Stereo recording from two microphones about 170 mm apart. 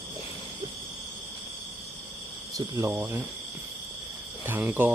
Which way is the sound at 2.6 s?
20° right (ahead or behind).